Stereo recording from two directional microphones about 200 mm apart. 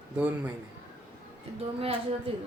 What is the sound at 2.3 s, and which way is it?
Speech, 30° right (ahead or behind).